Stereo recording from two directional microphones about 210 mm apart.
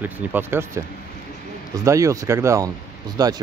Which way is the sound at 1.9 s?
15° right (ahead or behind).